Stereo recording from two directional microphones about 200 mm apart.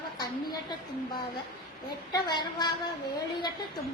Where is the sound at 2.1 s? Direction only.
20° left (ahead or behind).